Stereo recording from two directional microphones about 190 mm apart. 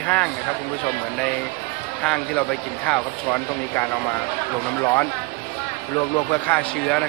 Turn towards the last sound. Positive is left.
turn(degrees=5)  # may be behind; listen again after turning